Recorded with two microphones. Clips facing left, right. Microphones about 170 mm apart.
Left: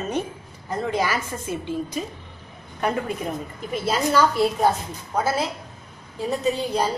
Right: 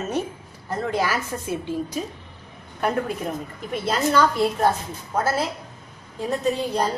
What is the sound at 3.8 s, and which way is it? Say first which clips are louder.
A woman's voice: even; 5° left (ahead or behind).